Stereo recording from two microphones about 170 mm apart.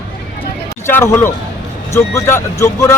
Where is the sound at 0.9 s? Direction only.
15° left (ahead or behind).